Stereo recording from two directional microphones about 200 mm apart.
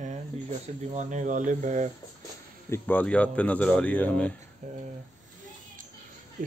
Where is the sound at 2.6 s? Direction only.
10° left (ahead or behind).